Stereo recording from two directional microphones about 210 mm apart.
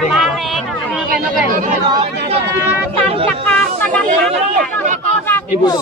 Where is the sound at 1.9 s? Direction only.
30° right (ahead or behind).